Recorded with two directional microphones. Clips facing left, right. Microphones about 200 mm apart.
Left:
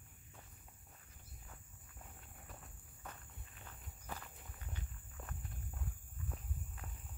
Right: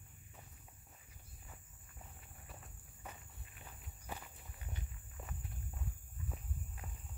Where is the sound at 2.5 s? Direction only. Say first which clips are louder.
Right 2 dB; 5° right (ahead or behind).